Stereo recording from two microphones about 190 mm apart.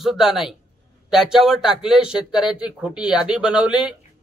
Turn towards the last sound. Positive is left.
turn(degrees=-5)  # may be behind; listen again after turning